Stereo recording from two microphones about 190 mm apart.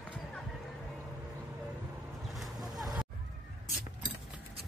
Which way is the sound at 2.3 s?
Centre (ahead or behind).